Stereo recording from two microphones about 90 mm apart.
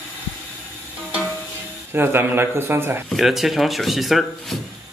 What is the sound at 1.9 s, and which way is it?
Speech, 25° right (ahead or behind).